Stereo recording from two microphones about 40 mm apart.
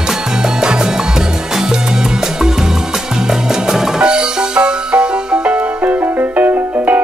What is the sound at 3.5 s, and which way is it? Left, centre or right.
Music, centre.